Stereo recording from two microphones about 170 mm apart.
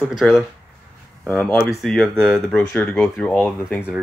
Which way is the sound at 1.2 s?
5° left (ahead or behind).